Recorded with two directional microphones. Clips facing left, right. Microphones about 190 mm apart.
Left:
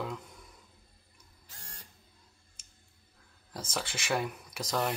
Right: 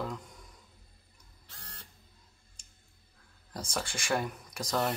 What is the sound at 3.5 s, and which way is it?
Speech, 5° left (ahead or behind).